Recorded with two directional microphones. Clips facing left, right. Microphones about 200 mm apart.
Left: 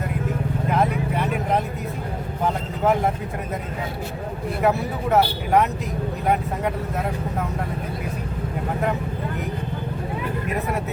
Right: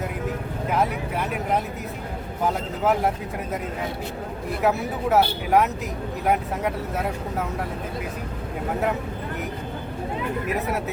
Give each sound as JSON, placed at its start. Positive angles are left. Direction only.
{"t": 0.7, "sound": "vehicle", "side_deg": 0}
{"t": 2.4, "sound": "speech", "side_deg": -5}
{"t": 4.6, "sound": "speech", "side_deg": 0}